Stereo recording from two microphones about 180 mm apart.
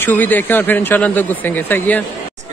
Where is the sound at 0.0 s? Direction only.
10° left (ahead or behind).